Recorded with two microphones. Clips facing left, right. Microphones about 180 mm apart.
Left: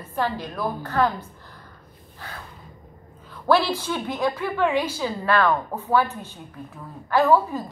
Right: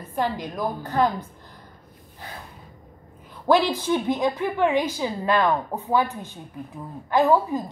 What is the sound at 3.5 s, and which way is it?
A woman's voice, 15° right (ahead or behind).